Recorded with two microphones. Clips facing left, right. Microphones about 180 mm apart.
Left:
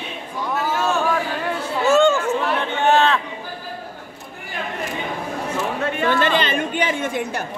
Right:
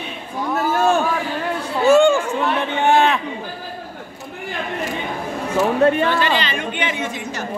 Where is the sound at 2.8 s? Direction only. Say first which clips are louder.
Right 1 dB; 15° right (ahead or behind).